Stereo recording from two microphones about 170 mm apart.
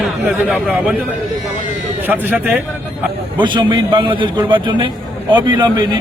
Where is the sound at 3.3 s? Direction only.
30° right (ahead or behind).